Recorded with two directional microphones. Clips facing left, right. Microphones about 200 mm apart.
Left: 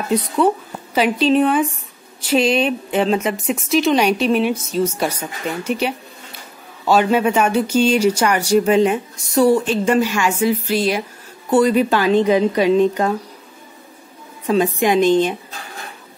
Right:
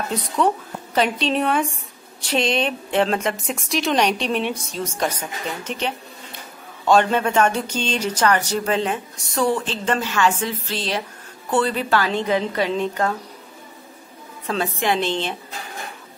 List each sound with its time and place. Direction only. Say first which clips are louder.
0.4 s a woman's voice: left 4 dB; 5° left (ahead or behind)
14.4 s speech: left 7 dB; 15° left (ahead or behind)